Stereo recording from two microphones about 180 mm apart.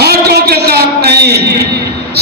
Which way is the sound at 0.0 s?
60° right (ahead or behind).